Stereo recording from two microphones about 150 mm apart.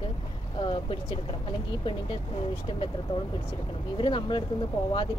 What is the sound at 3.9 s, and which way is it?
Speech, 35° left (ahead or behind).